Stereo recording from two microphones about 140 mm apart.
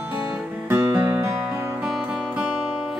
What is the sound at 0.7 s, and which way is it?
Music, 15° right (ahead or behind).